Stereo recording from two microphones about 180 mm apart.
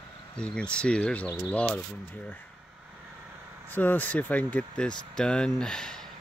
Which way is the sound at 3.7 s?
10° left (ahead or behind).